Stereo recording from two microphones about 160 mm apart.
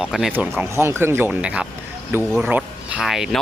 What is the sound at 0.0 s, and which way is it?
Speech, centre (ahead or behind).